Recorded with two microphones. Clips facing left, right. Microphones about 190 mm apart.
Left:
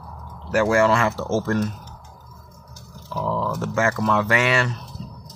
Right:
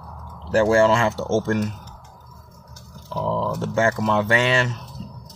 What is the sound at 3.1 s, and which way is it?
Speech, 25° right (ahead or behind).